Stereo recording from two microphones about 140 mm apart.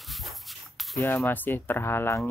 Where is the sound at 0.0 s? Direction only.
Centre (ahead or behind).